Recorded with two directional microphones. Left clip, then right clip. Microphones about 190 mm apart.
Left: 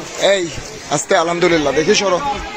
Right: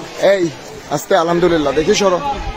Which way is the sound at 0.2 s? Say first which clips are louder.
Right 2 dB; 15° right (ahead or behind).